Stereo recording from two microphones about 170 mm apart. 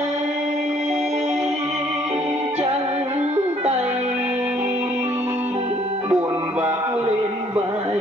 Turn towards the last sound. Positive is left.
turn(degrees=-10)  # may be behind; listen again after turning